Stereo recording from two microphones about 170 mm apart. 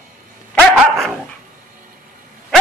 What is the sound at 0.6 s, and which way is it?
Dog, 5° left (ahead or behind).